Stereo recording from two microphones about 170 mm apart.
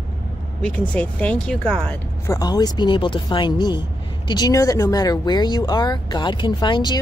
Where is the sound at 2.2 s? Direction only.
20° left (ahead or behind).